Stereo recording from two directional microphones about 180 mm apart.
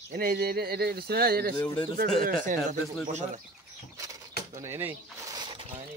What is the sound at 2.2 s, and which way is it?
Speech, 50° right (ahead or behind).